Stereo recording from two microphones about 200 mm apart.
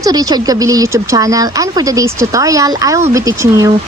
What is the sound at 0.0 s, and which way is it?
Speech, 20° right (ahead or behind).